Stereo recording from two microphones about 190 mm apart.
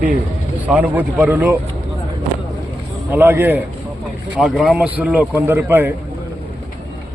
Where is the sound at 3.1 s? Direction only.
10° right (ahead or behind).